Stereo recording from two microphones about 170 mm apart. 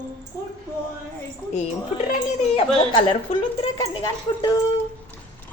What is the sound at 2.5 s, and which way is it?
Speech, 35° left (ahead or behind).